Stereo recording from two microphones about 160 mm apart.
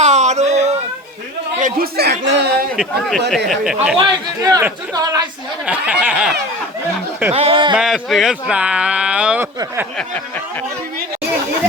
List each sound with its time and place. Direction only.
0.0 s baby cry: 45° right (ahead or behind)
1.5 s a sound: 55° right (ahead or behind)
2.0 s speech: 90° right
2.7 s speech: centre (ahead or behind)
3.9 s a man's voice: 25° right (ahead or behind)
5.6 s speech: 5° right (ahead or behind)
7.3 s speech: 35° right (ahead or behind)
7.8 s speech: centre (ahead or behind)